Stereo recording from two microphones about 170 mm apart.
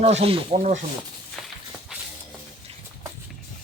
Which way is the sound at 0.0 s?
40° right (ahead or behind).